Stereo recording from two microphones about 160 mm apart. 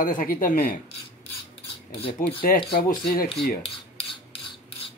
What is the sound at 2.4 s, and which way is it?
Speech, 60° left (ahead or behind).